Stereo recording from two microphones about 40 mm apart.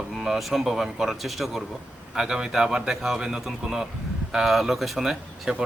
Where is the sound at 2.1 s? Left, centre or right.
Centre.